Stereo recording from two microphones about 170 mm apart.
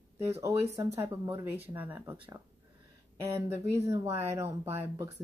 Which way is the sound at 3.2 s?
15° right (ahead or behind).